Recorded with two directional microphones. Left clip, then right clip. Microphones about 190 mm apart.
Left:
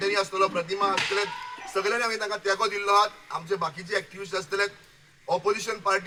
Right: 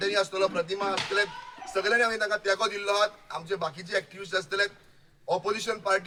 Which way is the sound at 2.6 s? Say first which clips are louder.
Left 4 dB; 30° right (ahead or behind).